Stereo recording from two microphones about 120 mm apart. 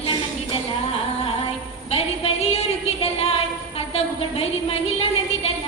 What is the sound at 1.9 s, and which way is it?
A woman's voice, 55° left (ahead or behind).